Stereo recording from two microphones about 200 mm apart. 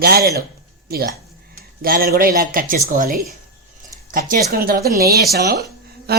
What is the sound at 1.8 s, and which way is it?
Speech, 50° right (ahead or behind).